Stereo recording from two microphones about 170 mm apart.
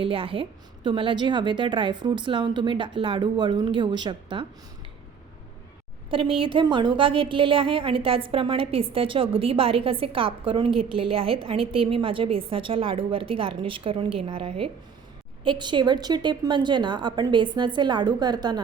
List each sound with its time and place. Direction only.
0.0 s a woman's voice: 30° right (ahead or behind)
6.1 s a woman's voice: 30° right (ahead or behind)